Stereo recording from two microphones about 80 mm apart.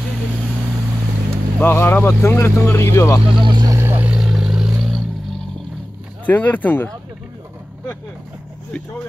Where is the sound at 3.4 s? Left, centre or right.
Right.